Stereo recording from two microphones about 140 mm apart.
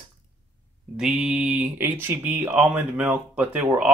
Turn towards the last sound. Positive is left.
turn(degrees=-15)  # may be behind; listen again after turning